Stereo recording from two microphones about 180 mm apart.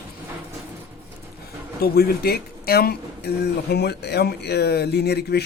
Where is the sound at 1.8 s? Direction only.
60° left (ahead or behind).